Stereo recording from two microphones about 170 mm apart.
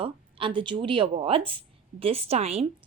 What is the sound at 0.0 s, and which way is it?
A woman's voice, 30° right (ahead or behind).